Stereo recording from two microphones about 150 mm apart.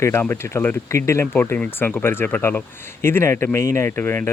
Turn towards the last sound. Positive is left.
turn(degrees=15)  # may be behind; listen again after turning